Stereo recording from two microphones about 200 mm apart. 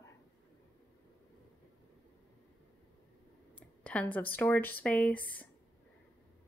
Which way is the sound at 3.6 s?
5° left (ahead or behind).